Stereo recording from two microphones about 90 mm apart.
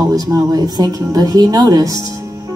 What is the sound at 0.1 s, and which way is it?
Speech, 45° right (ahead or behind).